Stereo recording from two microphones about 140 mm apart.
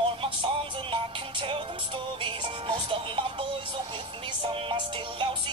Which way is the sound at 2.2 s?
35° right (ahead or behind).